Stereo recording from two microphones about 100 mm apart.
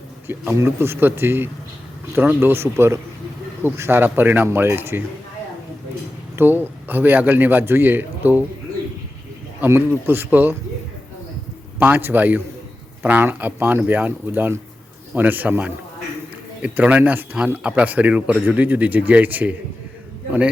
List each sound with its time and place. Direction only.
0.3 s a man's voice: 25° right (ahead or behind)
6.3 s a man's voice: 20° right (ahead or behind)
9.6 s a man's voice: 20° right (ahead or behind)
11.8 s a man's voice: 20° right (ahead or behind)